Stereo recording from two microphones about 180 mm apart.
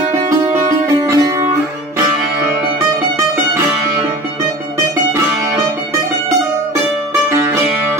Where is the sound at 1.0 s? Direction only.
20° right (ahead or behind).